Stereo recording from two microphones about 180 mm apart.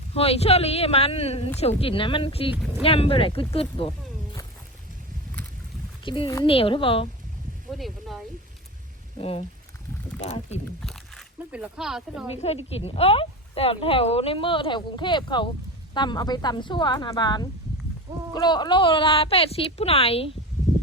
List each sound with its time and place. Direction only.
0.1 s speech: 35° left (ahead or behind)
6.1 s speech: 25° left (ahead or behind)
7.7 s speech: centre (ahead or behind)
9.1 s speech: 30° left (ahead or behind)
10.8 s biting: centre (ahead or behind)
11.3 s speech: 5° right (ahead or behind)
12.6 s speech: 35° left (ahead or behind)